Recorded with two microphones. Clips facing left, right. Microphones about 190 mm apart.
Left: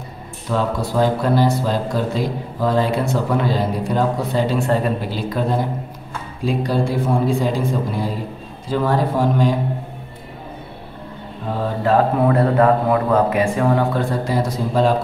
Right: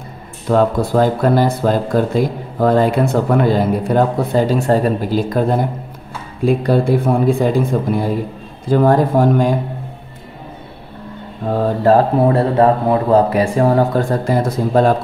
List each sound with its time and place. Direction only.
0.5 s speech: 55° right (ahead or behind)
6.4 s a man's voice: 55° right (ahead or behind)
11.8 s speech: 35° right (ahead or behind); by 15.0 s 50° right (ahead or behind)